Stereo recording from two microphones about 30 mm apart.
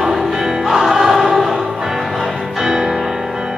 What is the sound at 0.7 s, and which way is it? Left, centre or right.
Music, centre.